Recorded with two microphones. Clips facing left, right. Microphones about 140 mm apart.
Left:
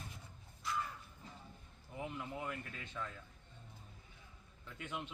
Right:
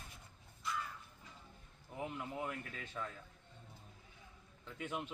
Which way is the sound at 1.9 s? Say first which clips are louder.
Right 1 dB; centre (ahead or behind).